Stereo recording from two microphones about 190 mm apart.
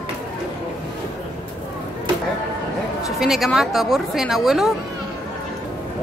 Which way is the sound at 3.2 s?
Centre (ahead or behind).